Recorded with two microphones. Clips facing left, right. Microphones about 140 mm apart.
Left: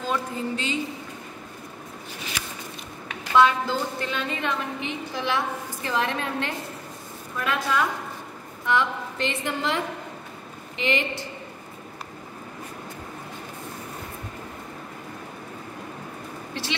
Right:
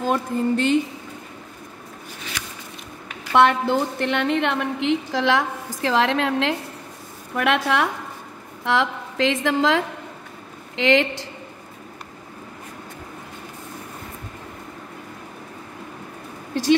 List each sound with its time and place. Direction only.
0.0 s a woman's voice: 55° right (ahead or behind)
3.3 s a woman's voice: 65° right (ahead or behind); by 6.5 s 90° right
7.3 s a woman's voice: 75° right (ahead or behind)
8.6 s a woman's voice: 90° right